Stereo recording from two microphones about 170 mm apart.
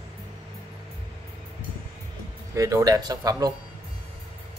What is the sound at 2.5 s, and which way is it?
Speech, 20° right (ahead or behind).